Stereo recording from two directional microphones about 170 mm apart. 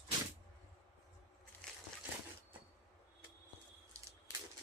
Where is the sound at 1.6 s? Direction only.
5° left (ahead or behind).